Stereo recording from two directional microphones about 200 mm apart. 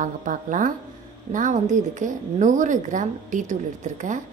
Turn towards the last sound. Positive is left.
turn(degrees=-40)  # may be behind; listen again after turning